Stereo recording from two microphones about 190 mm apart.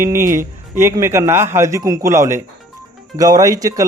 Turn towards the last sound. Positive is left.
turn(degrees=-20)  # may be behind; listen again after turning